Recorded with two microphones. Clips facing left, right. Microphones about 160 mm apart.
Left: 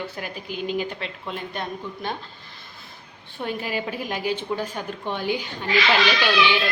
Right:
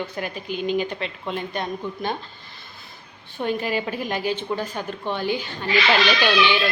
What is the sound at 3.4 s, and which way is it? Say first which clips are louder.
A woman's voice: right 4 dB; 5° left (ahead or behind).